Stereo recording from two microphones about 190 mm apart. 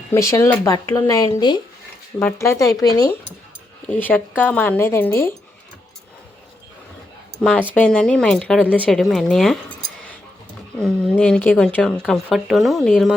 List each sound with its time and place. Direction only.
0.1 s speech: 15° left (ahead or behind)
7.7 s speech: 5° left (ahead or behind)
10.8 s speech: 5° left (ahead or behind)